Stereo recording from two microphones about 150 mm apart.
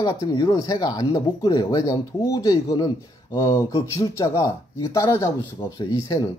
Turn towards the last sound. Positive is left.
turn(degrees=25)  # may be behind; listen again after turning